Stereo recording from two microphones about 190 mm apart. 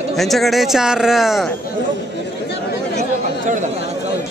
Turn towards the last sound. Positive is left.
turn(degrees=-40)  # may be behind; listen again after turning